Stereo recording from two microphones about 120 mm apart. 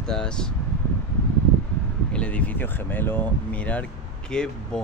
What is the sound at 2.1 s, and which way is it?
Speech, 10° left (ahead or behind).